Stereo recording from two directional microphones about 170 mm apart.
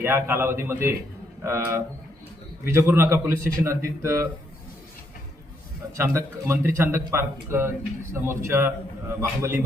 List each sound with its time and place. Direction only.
0.0 s a man's voice: 15° right (ahead or behind)
6.0 s a man's voice: 15° right (ahead or behind)